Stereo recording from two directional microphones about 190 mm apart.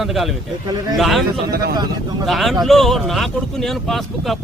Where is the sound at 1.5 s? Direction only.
55° right (ahead or behind).